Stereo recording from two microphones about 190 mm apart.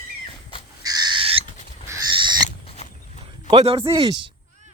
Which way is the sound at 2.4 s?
35° left (ahead or behind).